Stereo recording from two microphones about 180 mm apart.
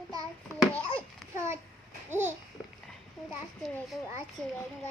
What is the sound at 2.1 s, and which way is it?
Babbling, 10° right (ahead or behind).